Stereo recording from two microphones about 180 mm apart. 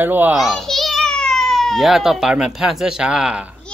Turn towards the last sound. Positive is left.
turn(degrees=-5)  # may be behind; listen again after turning